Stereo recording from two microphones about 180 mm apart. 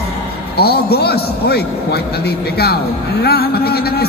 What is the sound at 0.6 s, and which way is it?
A man's voice, 60° left (ahead or behind).